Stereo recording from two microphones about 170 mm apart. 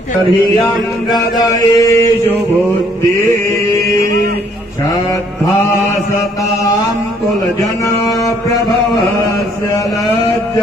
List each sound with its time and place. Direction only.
1.4 s chant: 20° left (ahead or behind)